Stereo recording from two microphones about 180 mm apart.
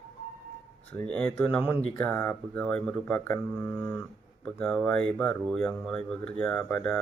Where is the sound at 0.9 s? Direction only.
5° left (ahead or behind).